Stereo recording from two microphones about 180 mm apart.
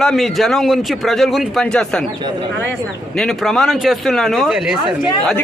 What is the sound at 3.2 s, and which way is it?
Speech, centre (ahead or behind).